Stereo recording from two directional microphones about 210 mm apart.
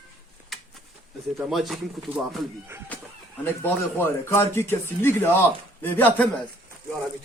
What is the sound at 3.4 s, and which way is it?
Speech, 10° left (ahead or behind).